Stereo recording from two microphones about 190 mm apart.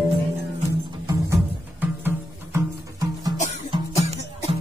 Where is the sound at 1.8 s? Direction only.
10° right (ahead or behind).